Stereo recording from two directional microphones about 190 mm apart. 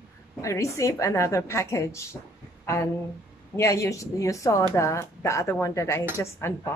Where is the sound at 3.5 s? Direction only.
15° left (ahead or behind).